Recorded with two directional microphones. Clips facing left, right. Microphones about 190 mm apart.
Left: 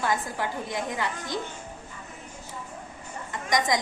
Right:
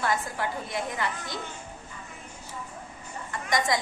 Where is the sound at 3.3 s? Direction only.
20° left (ahead or behind).